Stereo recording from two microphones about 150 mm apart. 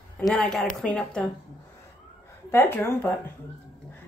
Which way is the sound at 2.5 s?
15° left (ahead or behind).